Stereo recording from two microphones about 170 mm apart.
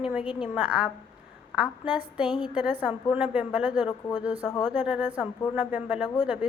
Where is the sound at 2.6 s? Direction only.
10° right (ahead or behind).